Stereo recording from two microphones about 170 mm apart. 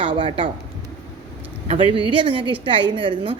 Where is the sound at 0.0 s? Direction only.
30° right (ahead or behind).